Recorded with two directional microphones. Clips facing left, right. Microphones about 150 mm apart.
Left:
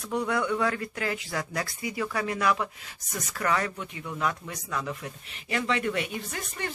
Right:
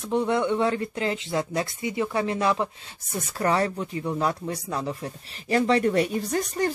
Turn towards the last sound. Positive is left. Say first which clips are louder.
# right 10 dB
turn(degrees=-40)  # may be behind; listen again after turning